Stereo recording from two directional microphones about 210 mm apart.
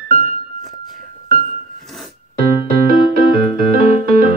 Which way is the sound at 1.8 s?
Centre (ahead or behind).